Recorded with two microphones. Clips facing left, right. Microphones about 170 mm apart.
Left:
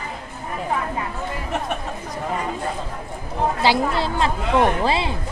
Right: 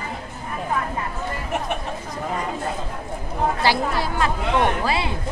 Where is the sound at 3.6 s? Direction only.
20° left (ahead or behind).